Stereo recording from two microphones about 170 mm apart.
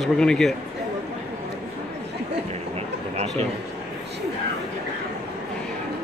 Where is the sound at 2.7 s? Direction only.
40° right (ahead or behind).